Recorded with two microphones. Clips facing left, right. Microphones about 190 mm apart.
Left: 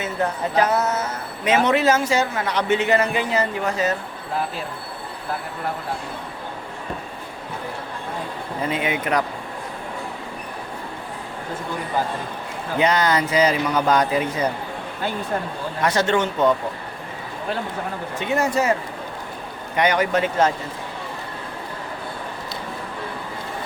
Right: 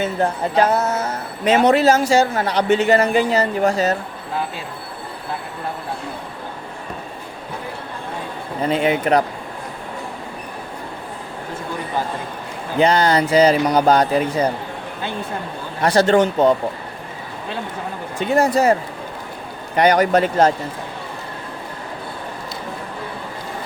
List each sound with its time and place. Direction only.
0.0 s a man's voice: 30° right (ahead or behind)
8.8 s a man's voice: 35° right (ahead or behind)
12.8 s a man's voice: 30° right (ahead or behind)
15.8 s a man's voice: 35° right (ahead or behind)
18.2 s a man's voice: 35° right (ahead or behind)
19.7 s a man's voice: 35° right (ahead or behind)